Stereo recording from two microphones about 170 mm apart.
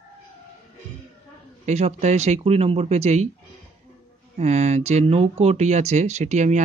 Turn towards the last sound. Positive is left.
turn(degrees=-45)  # may be behind; listen again after turning